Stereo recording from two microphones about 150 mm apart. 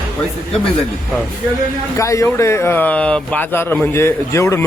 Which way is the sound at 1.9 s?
20° left (ahead or behind).